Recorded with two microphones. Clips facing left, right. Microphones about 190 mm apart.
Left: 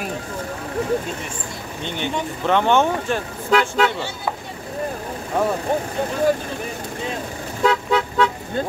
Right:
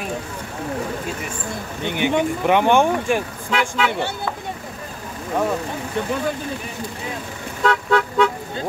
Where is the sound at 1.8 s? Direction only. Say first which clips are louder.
Right 6 dB; 15° right (ahead or behind).